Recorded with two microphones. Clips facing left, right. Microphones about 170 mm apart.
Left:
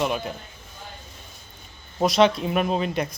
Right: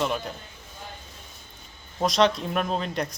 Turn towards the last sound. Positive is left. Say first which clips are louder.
# left 3 dB
turn(degrees=5)  # may be behind; listen again after turning